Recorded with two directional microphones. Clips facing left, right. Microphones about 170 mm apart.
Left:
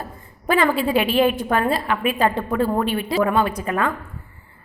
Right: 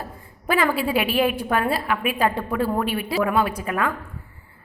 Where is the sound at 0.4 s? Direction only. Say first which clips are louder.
Left 3 dB; 5° right (ahead or behind).